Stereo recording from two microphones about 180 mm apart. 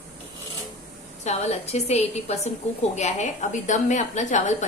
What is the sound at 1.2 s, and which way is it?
A woman's voice, 40° left (ahead or behind).